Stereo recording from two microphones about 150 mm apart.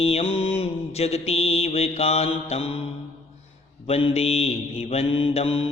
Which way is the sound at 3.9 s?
40° left (ahead or behind).